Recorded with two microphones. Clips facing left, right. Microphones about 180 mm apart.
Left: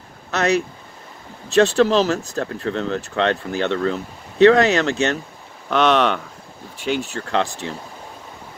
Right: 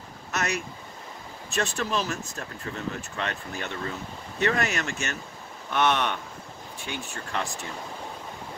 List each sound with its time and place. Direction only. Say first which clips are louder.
1.5 s speech: left 14 dB; 70° left (ahead or behind)
5.7 s speech: left 8 dB; 90° left